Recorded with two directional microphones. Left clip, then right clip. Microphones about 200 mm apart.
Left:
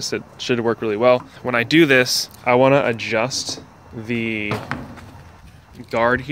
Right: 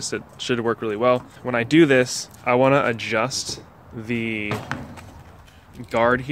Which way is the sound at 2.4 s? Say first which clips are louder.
Left 2 dB; 10° left (ahead or behind).